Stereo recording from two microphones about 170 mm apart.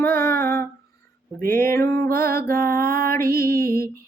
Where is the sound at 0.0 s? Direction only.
15° left (ahead or behind).